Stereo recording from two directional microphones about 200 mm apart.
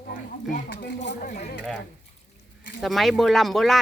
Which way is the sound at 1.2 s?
35° left (ahead or behind).